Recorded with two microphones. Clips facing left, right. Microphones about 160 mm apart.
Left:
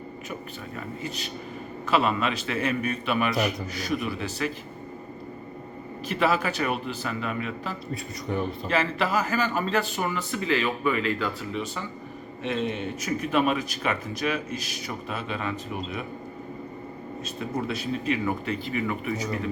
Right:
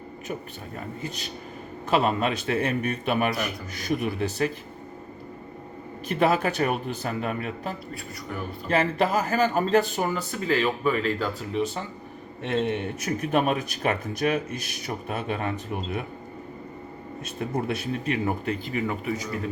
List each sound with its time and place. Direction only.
1.0 s speech: 45° right (ahead or behind)
6.1 s speech: 50° right (ahead or behind)
12.4 s a man's voice: 60° right (ahead or behind)
13.3 s speech: 50° right (ahead or behind)
17.2 s speech: 60° right (ahead or behind); by 18.9 s 40° right (ahead or behind)